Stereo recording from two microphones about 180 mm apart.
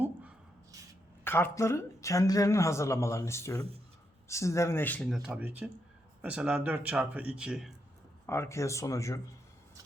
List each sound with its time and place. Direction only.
0.0 s a sound: 5° right (ahead or behind)
1.2 s speech: 10° left (ahead or behind); by 7.7 s 5° right (ahead or behind)
8.3 s speech: 15° left (ahead or behind)